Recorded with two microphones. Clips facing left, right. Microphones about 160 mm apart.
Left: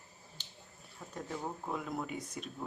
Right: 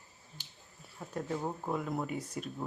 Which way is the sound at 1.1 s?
10° right (ahead or behind).